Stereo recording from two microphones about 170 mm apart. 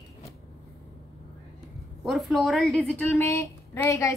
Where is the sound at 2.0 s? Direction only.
Centre (ahead or behind).